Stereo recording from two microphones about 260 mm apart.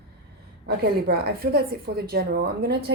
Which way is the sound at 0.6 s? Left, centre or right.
Right.